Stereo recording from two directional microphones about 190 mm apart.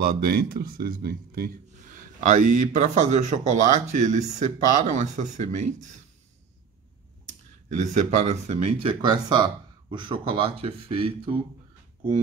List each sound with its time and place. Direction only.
0.0 s speech: 55° right (ahead or behind)
2.1 s speech: 40° right (ahead or behind)
7.2 s speech: 40° right (ahead or behind)
9.0 s speech: 20° right (ahead or behind)